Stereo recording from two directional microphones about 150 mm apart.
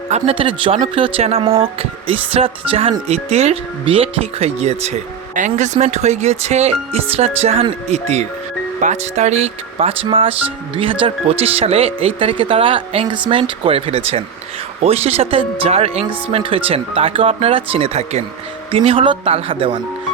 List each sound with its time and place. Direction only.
0.1 s speech: 40° right (ahead or behind)